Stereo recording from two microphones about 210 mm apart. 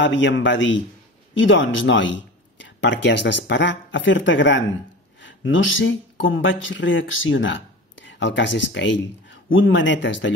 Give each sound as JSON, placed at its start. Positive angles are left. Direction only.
{"t": 0.0, "sound": "speech", "side_deg": 60}